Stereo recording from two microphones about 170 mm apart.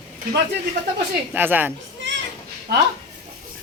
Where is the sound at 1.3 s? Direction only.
10° right (ahead or behind).